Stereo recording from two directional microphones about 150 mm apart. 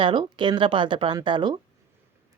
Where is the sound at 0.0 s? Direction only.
35° right (ahead or behind).